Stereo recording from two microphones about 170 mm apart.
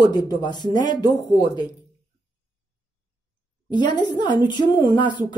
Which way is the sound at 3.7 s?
25° left (ahead or behind).